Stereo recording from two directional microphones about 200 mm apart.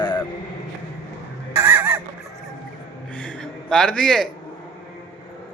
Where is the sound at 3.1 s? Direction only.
5° left (ahead or behind).